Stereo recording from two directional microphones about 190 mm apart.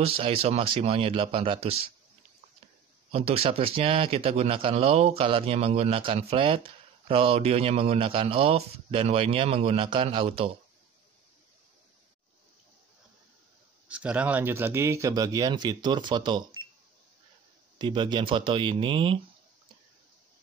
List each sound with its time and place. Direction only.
0.0 s speech: 30° right (ahead or behind)
3.1 s a man's voice: 30° right (ahead or behind)
13.8 s speech: 5° right (ahead or behind); by 16.6 s 25° right (ahead or behind)
17.7 s speech: 25° right (ahead or behind)